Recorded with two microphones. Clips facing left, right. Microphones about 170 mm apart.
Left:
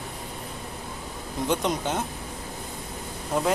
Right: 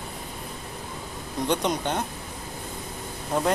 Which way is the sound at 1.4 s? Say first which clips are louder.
Even; 5° left (ahead or behind).